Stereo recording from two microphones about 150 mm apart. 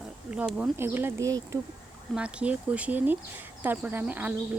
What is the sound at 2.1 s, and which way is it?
Speech, 10° right (ahead or behind).